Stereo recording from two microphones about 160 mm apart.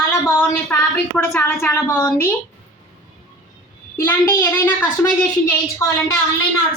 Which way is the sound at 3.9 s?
15° left (ahead or behind).